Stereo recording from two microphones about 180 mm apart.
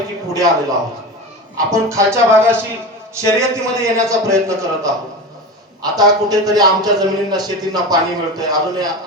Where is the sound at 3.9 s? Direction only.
15° right (ahead or behind).